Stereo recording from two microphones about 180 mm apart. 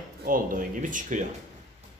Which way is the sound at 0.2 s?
50° right (ahead or behind).